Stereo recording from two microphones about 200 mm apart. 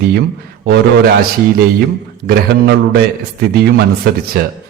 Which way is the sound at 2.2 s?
55° right (ahead or behind).